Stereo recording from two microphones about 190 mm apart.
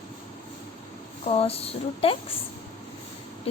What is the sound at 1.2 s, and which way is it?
Speech, 30° left (ahead or behind).